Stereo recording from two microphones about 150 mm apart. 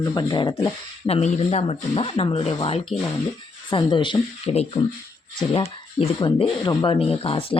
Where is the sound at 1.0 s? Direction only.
45° left (ahead or behind).